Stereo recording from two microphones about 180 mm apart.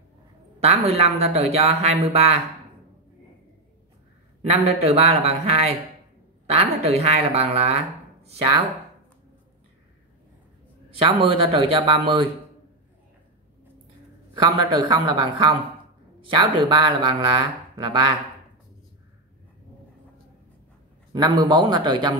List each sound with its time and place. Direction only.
0.6 s speech: 35° right (ahead or behind)
4.5 s speech: 35° right (ahead or behind)
11.0 s speech: 30° right (ahead or behind)
14.3 s speech: 25° right (ahead or behind)
21.1 s speech: 25° right (ahead or behind)